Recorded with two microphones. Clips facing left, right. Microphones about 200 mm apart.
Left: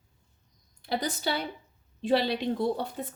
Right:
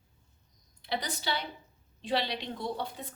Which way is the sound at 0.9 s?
45° left (ahead or behind).